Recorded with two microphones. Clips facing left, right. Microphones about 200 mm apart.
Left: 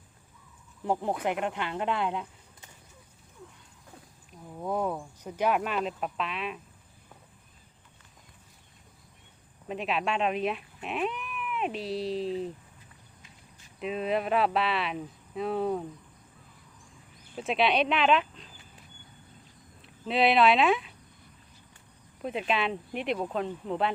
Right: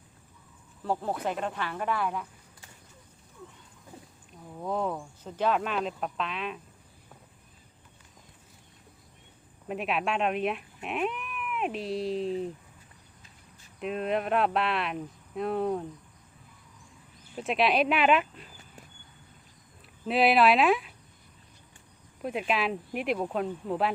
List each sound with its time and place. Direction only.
0.8 s speech: 20° left (ahead or behind)
4.3 s speech: 5° left (ahead or behind)
9.6 s speech: 5° right (ahead or behind)
13.7 s speech: centre (ahead or behind)
17.3 s speech: centre (ahead or behind)
20.1 s speech: centre (ahead or behind)
22.2 s speech: 5° right (ahead or behind)